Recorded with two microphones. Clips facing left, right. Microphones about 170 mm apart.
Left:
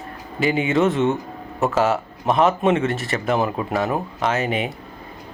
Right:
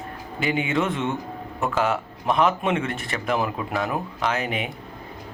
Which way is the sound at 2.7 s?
Centre (ahead or behind).